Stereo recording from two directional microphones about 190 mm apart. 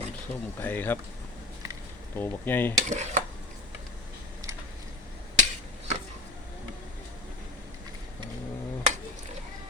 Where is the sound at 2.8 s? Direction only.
40° right (ahead or behind).